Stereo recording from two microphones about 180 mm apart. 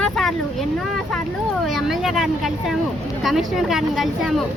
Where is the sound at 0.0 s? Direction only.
Centre (ahead or behind).